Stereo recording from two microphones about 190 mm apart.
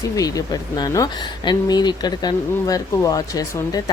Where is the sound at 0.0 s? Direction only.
20° left (ahead or behind).